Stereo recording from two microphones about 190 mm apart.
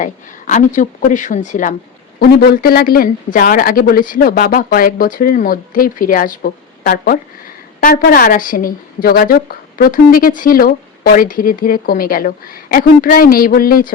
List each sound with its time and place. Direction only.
0.0 s a woman's voice: 40° left (ahead or behind)
2.1 s a woman's voice: 55° left (ahead or behind)